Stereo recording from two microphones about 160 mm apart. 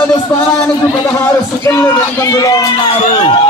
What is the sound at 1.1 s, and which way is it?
Speech, 15° left (ahead or behind).